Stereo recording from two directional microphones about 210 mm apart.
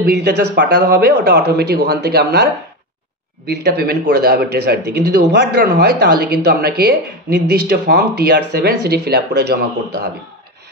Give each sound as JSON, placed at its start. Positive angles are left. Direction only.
{"t": 0.0, "sound": "speech", "side_deg": -55}
{"t": 3.4, "sound": "speech", "side_deg": -50}